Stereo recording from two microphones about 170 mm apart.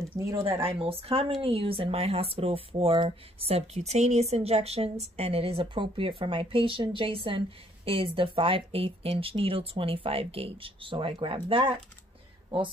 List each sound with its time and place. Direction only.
0.3 s speech: 30° right (ahead or behind)